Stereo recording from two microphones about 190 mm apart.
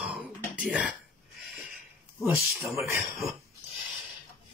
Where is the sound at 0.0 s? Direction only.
5° right (ahead or behind).